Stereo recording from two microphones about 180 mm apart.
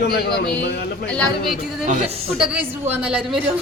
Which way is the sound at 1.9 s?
35° right (ahead or behind).